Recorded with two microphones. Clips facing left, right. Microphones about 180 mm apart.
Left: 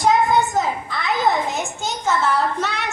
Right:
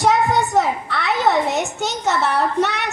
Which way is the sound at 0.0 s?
70° right (ahead or behind).